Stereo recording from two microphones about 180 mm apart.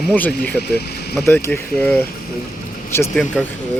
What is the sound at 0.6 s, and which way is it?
Speech, 60° left (ahead or behind).